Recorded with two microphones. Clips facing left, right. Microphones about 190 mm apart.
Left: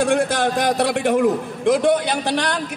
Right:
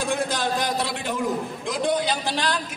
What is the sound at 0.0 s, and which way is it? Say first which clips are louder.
A man's voice: left 7 dB; 65° left (ahead or behind).